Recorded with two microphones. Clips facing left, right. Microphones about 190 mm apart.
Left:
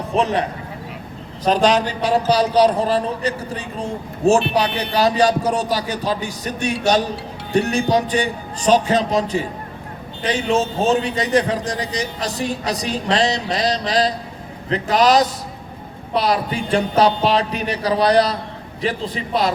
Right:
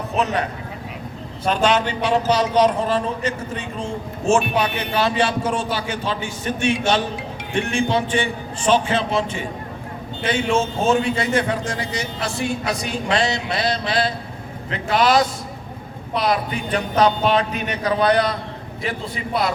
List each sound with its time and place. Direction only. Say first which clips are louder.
0.2 s a man's voice: left 3 dB; 30° left (ahead or behind)
1.5 s a man's voice: left 3 dB; 35° left (ahead or behind)